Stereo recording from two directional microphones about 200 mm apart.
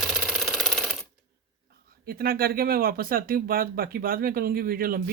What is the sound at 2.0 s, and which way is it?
Speech, 50° right (ahead or behind).